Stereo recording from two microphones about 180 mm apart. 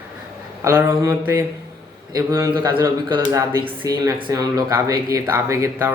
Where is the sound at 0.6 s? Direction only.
15° right (ahead or behind).